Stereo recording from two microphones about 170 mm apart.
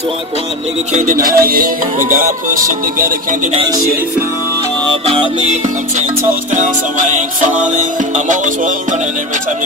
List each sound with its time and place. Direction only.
0.9 s music: 55° right (ahead or behind)
5.4 s music: 45° right (ahead or behind)